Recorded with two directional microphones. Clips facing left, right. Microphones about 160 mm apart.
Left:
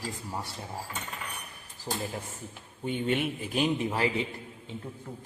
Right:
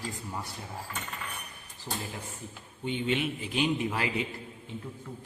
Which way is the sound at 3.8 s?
30° left (ahead or behind).